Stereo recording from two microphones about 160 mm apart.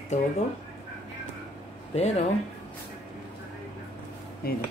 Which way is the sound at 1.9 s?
40° left (ahead or behind).